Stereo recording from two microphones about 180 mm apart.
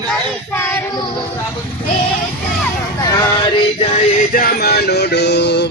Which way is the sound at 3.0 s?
20° left (ahead or behind).